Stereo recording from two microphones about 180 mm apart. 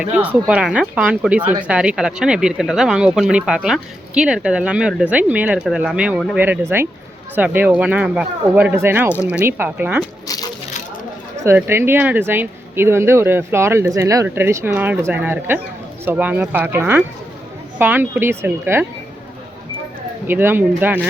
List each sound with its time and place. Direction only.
0.0 s speech: 10° right (ahead or behind)
10.2 s a sound: 20° left (ahead or behind)
11.4 s speech: 10° right (ahead or behind)
20.2 s speech: 10° right (ahead or behind)